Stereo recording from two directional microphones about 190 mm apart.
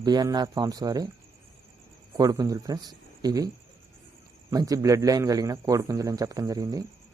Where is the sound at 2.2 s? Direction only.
20° right (ahead or behind).